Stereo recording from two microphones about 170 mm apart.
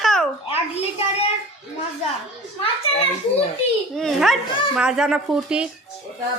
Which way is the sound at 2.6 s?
35° left (ahead or behind).